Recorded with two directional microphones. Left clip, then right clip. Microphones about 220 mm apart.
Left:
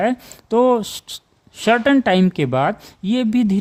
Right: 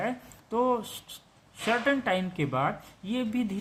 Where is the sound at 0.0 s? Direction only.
55° left (ahead or behind).